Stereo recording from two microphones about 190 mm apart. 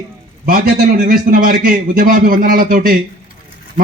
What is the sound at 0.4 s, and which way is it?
Speech, 50° right (ahead or behind).